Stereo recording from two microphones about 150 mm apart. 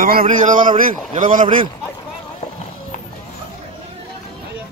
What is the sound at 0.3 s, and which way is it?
A man's voice, 60° right (ahead or behind).